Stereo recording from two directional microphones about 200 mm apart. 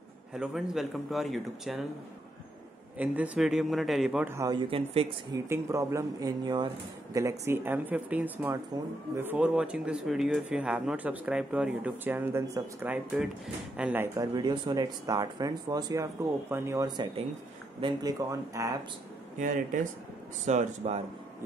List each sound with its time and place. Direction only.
0.3 s speech: 5° right (ahead or behind)
3.0 s speech: 5° right (ahead or behind)
4.6 s speech: 30° right (ahead or behind)
5.3 s speech: 15° right (ahead or behind)
19.3 s speech: 40° right (ahead or behind)